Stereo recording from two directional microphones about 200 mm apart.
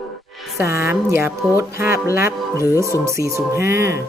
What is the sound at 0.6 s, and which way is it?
Speech, 15° right (ahead or behind).